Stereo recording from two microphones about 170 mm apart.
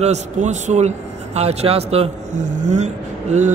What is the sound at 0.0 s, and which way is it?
A man's voice, 40° right (ahead or behind).